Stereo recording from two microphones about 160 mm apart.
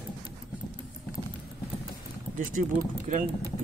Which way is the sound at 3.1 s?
55° right (ahead or behind).